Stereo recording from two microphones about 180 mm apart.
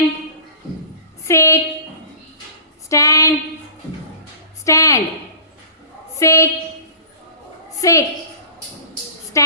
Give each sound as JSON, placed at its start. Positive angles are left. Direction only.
{"t": 1.3, "sound": "a woman's voice", "side_deg": 15}
{"t": 2.9, "sound": "a woman's voice", "side_deg": 20}
{"t": 4.6, "sound": "a woman's voice", "side_deg": 15}
{"t": 6.1, "sound": "a woman's voice", "side_deg": 15}
{"t": 7.8, "sound": "a woman's voice", "side_deg": 20}